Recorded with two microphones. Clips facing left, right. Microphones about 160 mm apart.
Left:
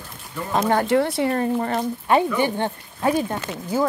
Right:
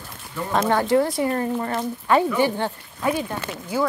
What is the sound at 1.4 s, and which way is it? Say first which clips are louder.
Speech: left 2 dB; 30° left (ahead or behind).